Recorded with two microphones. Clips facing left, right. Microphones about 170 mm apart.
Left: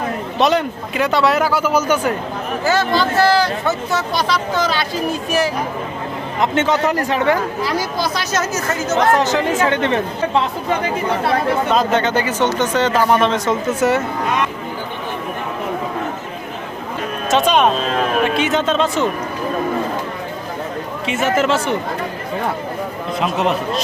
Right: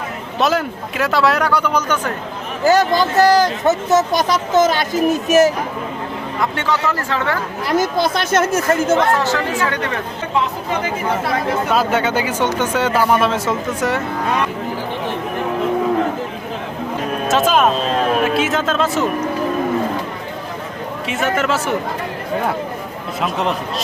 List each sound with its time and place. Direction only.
0.3 s speech: centre (ahead or behind)
2.6 s a woman's voice: 40° right (ahead or behind)
6.4 s speech: 20° left (ahead or behind)
7.7 s a woman's voice: 50° right (ahead or behind)
9.1 s speech: 20° left (ahead or behind)
11.7 s speech: 5° right (ahead or behind)
17.2 s speech: centre (ahead or behind)
21.1 s speech: centre (ahead or behind)
23.2 s speech: centre (ahead or behind)